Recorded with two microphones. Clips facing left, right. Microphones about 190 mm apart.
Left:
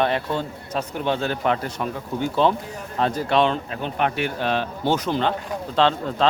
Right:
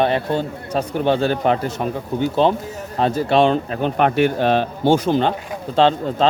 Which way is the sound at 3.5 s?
50° right (ahead or behind).